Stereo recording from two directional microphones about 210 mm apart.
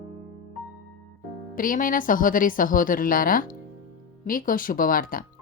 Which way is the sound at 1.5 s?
40° left (ahead or behind).